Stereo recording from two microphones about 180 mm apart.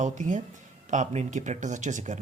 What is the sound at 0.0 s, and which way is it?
Speech, 45° right (ahead or behind).